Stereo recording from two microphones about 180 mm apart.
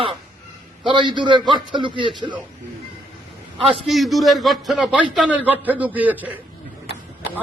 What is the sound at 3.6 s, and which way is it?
A man's voice, centre (ahead or behind).